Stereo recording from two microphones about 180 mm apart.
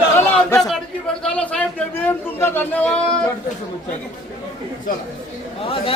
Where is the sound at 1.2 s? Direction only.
5° left (ahead or behind).